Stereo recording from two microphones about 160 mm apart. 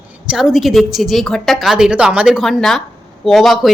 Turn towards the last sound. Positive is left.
turn(degrees=0)  # may be behind; listen again after turning